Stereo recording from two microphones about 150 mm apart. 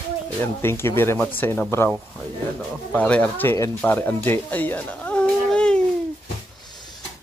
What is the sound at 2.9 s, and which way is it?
Speech, 10° left (ahead or behind).